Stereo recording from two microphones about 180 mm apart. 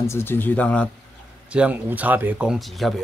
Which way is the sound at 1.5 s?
5° right (ahead or behind).